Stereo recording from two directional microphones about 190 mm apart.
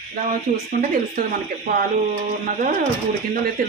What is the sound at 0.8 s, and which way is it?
Speech, 45° right (ahead or behind).